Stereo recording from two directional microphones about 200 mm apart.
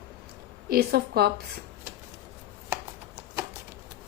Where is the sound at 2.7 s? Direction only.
15° right (ahead or behind).